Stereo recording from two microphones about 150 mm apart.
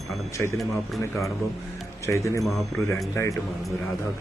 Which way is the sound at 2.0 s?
20° left (ahead or behind).